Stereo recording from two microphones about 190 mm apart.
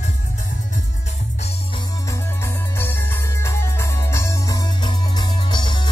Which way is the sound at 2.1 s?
15° left (ahead or behind).